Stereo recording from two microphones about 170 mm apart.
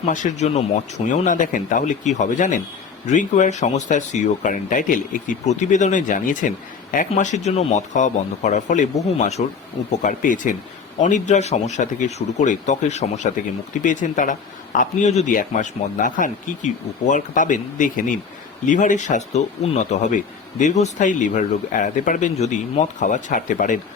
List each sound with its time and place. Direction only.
0.1 s speech: 45° left (ahead or behind)